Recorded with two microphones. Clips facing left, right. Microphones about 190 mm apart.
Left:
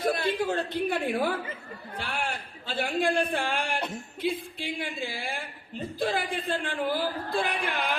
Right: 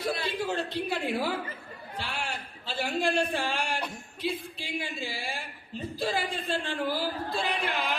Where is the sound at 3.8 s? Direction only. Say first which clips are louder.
Left 3 dB; 25° left (ahead or behind).